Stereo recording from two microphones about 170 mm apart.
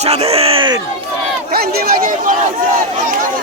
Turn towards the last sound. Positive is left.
turn(degrees=-55)  # may be behind; listen again after turning